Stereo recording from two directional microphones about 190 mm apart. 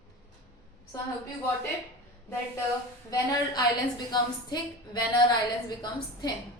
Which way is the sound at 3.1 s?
20° left (ahead or behind).